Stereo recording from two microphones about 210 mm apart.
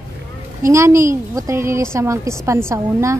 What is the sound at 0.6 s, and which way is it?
A woman's voice, 15° right (ahead or behind).